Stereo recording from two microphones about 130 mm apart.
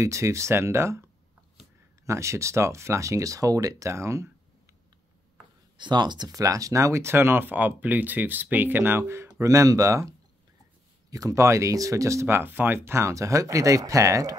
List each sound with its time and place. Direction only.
0.0 s speech: 25° right (ahead or behind)
2.0 s speech: 20° right (ahead or behind)
5.8 s speech: 35° right (ahead or behind)